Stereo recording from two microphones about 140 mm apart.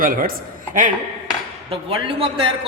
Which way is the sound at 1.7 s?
40° right (ahead or behind).